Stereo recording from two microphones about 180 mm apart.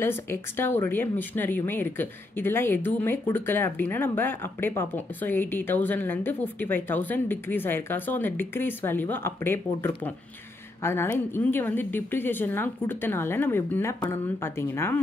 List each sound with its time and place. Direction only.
0.0 s speech: 10° left (ahead or behind)